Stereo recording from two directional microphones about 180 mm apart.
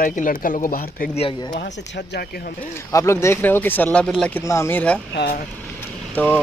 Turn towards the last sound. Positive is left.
turn(degrees=10)  # may be behind; listen again after turning